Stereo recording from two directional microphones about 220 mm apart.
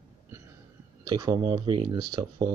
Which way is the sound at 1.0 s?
15° right (ahead or behind).